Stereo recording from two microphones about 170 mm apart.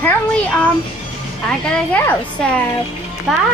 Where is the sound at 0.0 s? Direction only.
10° left (ahead or behind).